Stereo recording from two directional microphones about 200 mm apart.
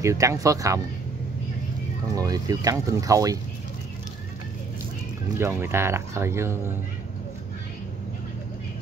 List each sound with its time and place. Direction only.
0.0 s speech: 15° right (ahead or behind)
2.1 s speech: 20° right (ahead or behind)
5.4 s speech: 10° right (ahead or behind)